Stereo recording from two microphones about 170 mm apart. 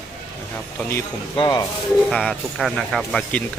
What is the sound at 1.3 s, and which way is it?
Speech, 25° left (ahead or behind).